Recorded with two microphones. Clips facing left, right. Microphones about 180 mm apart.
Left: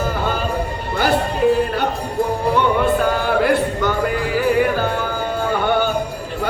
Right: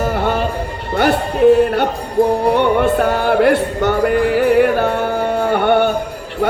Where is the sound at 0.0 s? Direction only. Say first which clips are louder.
Right 4 dB; 70° right (ahead or behind).